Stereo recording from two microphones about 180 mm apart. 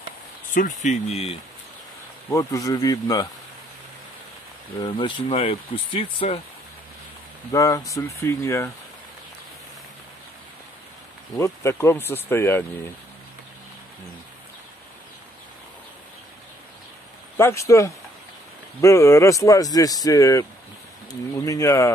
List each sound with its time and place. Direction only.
0.6 s speech: 45° left (ahead or behind)
2.2 s speech: 15° left (ahead or behind)
4.7 s speech: 25° left (ahead or behind)
7.5 s speech: 20° left (ahead or behind)
11.3 s speech: 15° left (ahead or behind)
17.4 s speech: 15° left (ahead or behind)